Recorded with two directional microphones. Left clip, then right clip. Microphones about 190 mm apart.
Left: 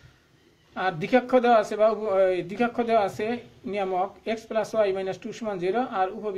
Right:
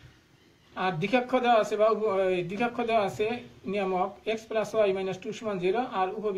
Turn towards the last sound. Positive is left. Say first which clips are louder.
# left 2 dB
turn(degrees=45)  # may be behind; listen again after turning